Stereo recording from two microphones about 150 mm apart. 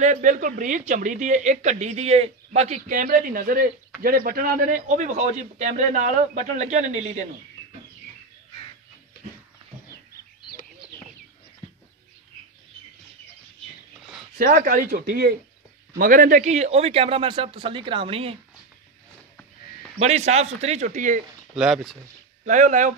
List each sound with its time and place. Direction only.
0.0 s a man's voice: 55° right (ahead or behind)
14.4 s speech: 75° right (ahead or behind); by 15.3 s 90° right
16.0 s speech: 65° right (ahead or behind); by 18.4 s 40° right (ahead or behind)
20.0 s a man's voice: 45° right (ahead or behind)
21.5 s speech: 5° right (ahead or behind)
22.4 s speech: 55° right (ahead or behind)